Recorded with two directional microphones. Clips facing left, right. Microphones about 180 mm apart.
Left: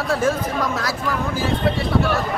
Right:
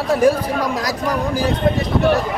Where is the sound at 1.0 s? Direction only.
40° right (ahead or behind).